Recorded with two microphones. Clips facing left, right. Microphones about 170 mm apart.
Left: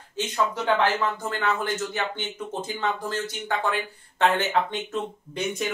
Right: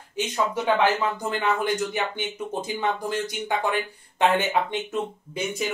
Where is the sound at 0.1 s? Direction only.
15° right (ahead or behind).